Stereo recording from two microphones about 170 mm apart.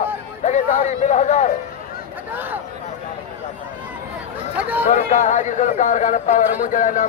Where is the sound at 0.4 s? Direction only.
45° left (ahead or behind).